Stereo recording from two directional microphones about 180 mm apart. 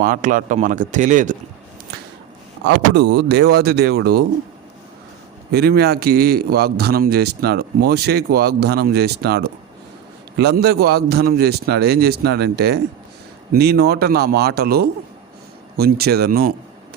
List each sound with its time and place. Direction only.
0.0 s speech: 45° right (ahead or behind)
2.6 s speech: 70° right (ahead or behind)
5.5 s a man's voice: 60° right (ahead or behind)